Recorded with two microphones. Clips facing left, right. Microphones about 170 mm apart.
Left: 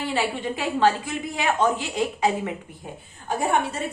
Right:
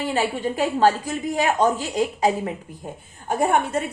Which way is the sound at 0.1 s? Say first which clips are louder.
Right 2 dB; 40° right (ahead or behind).